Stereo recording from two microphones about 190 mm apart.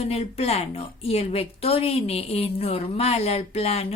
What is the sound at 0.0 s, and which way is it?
A woman's voice, 30° left (ahead or behind).